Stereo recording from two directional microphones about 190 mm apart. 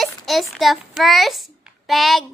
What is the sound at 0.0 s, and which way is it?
A child's voice, centre (ahead or behind).